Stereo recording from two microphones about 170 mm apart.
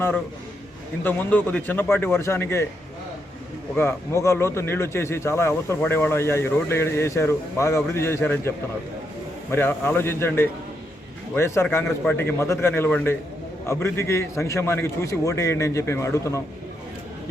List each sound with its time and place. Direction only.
1.0 s speech: 10° left (ahead or behind)
3.8 s speech: 15° left (ahead or behind)